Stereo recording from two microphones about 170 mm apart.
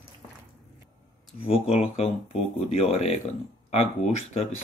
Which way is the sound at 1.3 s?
35° left (ahead or behind).